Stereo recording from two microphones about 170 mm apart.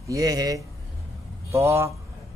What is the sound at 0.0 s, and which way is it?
Speech, 20° right (ahead or behind).